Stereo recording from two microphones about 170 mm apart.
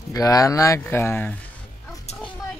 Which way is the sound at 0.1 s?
20° left (ahead or behind).